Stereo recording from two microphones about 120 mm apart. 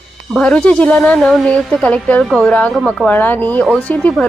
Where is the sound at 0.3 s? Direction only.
10° left (ahead or behind).